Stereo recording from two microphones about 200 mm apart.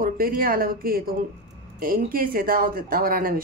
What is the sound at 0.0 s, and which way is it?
Speech, 45° right (ahead or behind).